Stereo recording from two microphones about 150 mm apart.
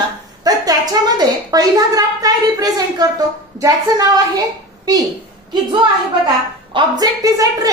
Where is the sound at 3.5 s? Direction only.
25° right (ahead or behind).